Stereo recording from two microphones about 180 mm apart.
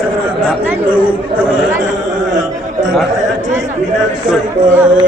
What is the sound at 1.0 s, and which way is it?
Speech, 5° right (ahead or behind).